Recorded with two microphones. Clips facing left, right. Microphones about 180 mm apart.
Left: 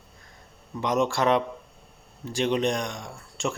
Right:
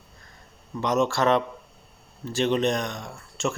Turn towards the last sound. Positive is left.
turn(degrees=15)  # may be behind; listen again after turning